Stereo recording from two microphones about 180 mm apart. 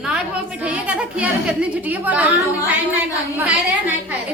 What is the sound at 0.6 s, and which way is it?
A woman's voice, 5° right (ahead or behind).